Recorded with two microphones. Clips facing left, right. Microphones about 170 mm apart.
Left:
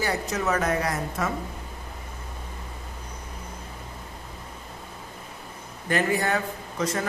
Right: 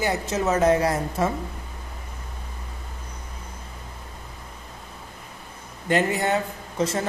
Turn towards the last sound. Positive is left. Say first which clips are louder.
# right 3 dB
turn(degrees=-25)  # may be behind; listen again after turning